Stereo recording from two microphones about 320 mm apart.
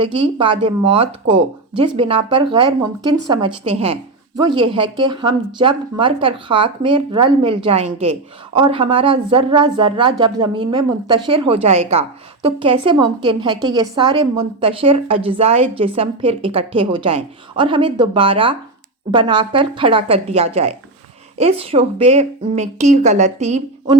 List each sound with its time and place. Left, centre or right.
0.3 s a woman's voice: centre